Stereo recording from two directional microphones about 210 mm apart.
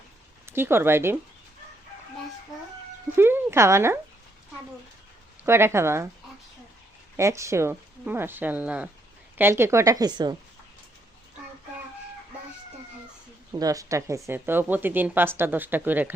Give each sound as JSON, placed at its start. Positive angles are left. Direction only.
{"t": 0.4, "sound": "a woman's voice", "side_deg": -10}
{"t": 3.2, "sound": "a woman's voice", "side_deg": -10}
{"t": 5.4, "sound": "a woman's voice", "side_deg": -10}
{"t": 7.2, "sound": "a woman's voice", "side_deg": -15}
{"t": 13.5, "sound": "a woman's voice", "side_deg": -15}